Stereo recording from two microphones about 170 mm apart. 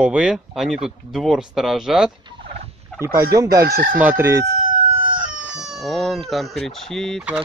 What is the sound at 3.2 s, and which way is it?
Chicken, 20° right (ahead or behind).